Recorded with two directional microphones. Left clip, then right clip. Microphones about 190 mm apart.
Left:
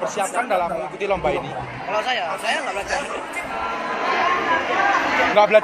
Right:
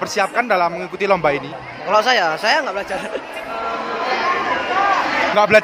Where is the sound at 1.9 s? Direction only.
50° right (ahead or behind).